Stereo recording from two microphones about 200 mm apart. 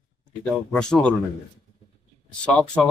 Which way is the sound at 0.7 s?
5° left (ahead or behind).